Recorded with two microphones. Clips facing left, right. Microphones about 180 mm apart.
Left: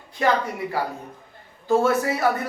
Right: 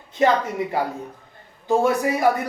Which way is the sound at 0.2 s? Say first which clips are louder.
Right 3 dB; 20° right (ahead or behind).